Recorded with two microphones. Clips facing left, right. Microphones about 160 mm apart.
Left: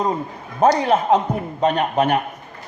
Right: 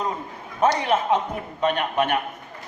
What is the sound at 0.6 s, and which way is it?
Speech, 35° left (ahead or behind).